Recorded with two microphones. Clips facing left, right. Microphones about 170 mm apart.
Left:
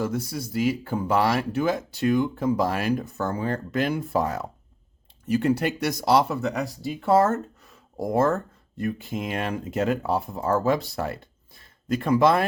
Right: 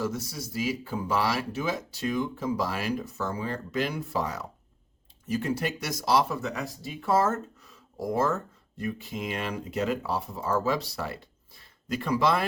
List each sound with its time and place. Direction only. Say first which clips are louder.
0.0 s speech: left 4 dB; 55° left (ahead or behind)
5.3 s speech: left 6 dB; 65° left (ahead or behind)